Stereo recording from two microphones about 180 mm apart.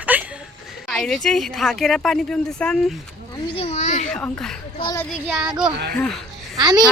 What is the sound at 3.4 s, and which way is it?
Speech, 30° left (ahead or behind).